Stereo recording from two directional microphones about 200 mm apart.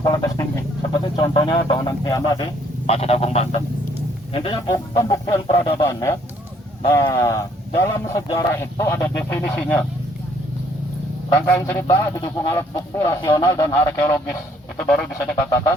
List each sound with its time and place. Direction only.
0.0 s speech: 15° left (ahead or behind)
2.8 s a sound: 30° left (ahead or behind)
4.3 s speech: 25° left (ahead or behind); by 9.8 s 10° left (ahead or behind)
11.4 s speech: 10° left (ahead or behind)
14.8 s duck: centre (ahead or behind)
15.4 s speech: 15° left (ahead or behind)